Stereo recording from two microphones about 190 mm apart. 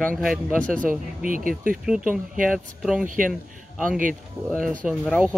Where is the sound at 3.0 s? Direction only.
45° right (ahead or behind).